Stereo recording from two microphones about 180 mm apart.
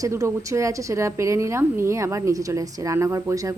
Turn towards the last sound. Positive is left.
turn(degrees=-20)  # may be behind; listen again after turning